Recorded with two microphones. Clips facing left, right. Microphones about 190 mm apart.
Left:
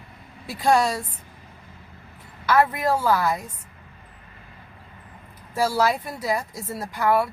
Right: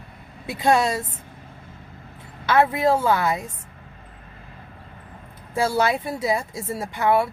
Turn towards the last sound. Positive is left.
turn(degrees=-25)  # may be behind; listen again after turning